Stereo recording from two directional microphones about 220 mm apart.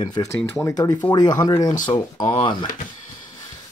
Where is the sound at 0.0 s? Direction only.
15° left (ahead or behind).